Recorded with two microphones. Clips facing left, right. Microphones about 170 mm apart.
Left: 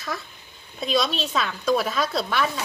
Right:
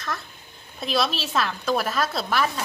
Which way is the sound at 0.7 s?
5° right (ahead or behind).